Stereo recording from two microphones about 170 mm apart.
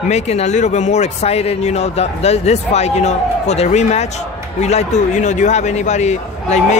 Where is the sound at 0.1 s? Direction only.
40° left (ahead or behind).